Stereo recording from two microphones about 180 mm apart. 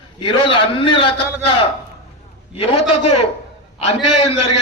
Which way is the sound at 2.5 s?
35° left (ahead or behind).